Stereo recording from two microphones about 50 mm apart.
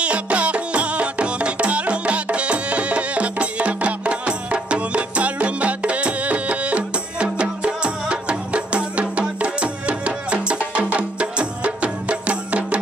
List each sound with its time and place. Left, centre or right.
0.0 s music: right